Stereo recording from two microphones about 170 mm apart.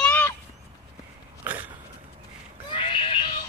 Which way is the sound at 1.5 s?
10° right (ahead or behind).